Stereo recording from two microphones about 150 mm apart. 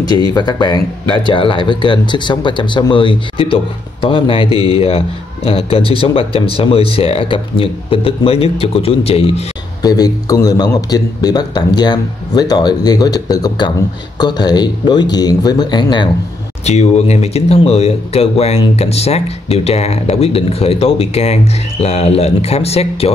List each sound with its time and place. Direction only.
0.3 s a man's voice: 30° left (ahead or behind)
9.8 s a man's voice: 25° left (ahead or behind)
16.6 s speech: 45° left (ahead or behind)